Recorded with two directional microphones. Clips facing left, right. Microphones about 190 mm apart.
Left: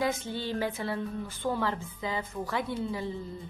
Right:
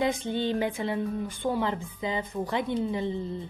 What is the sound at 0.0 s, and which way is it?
Speech, 20° right (ahead or behind).